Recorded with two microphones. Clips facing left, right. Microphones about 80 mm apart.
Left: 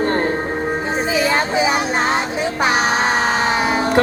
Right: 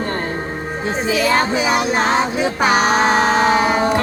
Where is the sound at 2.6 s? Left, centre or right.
Centre.